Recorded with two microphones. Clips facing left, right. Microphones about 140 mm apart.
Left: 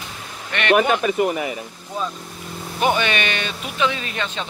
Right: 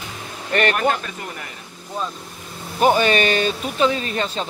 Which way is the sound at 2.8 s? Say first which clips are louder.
Right 4 dB; 40° right (ahead or behind).